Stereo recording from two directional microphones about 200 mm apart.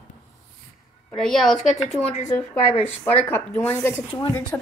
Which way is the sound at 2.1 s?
35° left (ahead or behind).